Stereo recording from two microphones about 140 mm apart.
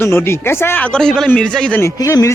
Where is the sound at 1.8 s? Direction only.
20° left (ahead or behind).